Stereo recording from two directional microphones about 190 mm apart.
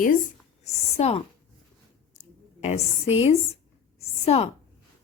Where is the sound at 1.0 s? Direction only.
30° left (ahead or behind).